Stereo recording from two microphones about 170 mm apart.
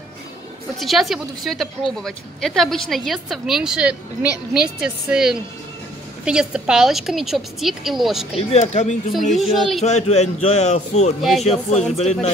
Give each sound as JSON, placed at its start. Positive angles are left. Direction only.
{"t": 0.7, "sound": "speech", "side_deg": 0}
{"t": 8.4, "sound": "speech", "side_deg": 40}
{"t": 9.3, "sound": "speech", "side_deg": 0}
{"t": 9.8, "sound": "speech", "side_deg": 40}